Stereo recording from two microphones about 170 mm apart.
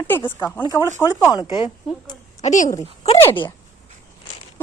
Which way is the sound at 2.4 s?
45° left (ahead or behind).